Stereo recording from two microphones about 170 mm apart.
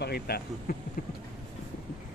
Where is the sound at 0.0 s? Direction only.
65° left (ahead or behind).